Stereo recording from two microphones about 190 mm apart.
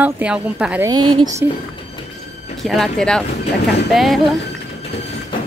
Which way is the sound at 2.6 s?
Centre (ahead or behind).